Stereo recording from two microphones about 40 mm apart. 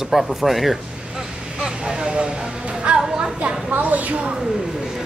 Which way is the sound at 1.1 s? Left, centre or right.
Centre.